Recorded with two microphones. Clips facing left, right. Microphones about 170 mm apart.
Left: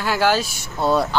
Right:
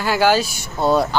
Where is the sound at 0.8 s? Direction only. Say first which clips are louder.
Right 2 dB; 15° right (ahead or behind).